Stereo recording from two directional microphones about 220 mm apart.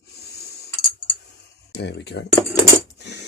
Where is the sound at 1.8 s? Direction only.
50° left (ahead or behind).